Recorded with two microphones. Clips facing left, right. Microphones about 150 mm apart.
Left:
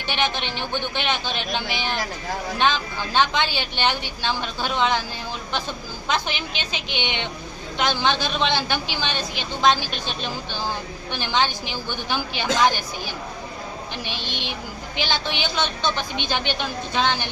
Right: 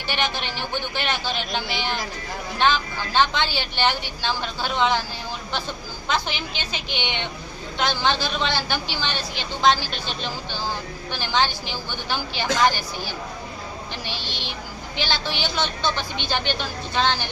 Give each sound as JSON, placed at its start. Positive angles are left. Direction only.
{"t": 0.1, "sound": "a woman's voice", "side_deg": 20}
{"t": 6.1, "sound": "a woman's voice", "side_deg": 15}